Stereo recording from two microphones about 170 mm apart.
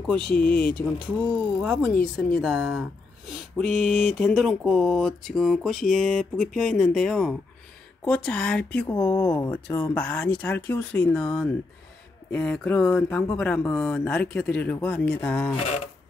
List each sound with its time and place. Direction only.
0.3 s speech: 60° left (ahead or behind)
0.6 s speech: 5° left (ahead or behind)
3.3 s a sound: centre (ahead or behind)
4.1 s speech: 5° left (ahead or behind)